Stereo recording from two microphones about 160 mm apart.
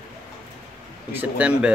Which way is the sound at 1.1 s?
10° right (ahead or behind).